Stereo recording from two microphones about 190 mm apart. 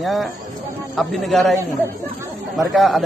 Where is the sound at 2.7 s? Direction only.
Centre (ahead or behind).